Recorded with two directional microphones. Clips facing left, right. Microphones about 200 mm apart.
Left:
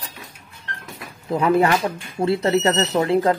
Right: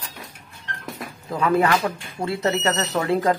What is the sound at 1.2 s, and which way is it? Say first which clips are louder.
Speech: left 3 dB; 25° left (ahead or behind).